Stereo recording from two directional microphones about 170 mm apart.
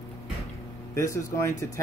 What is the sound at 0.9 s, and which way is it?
Speech, 15° left (ahead or behind).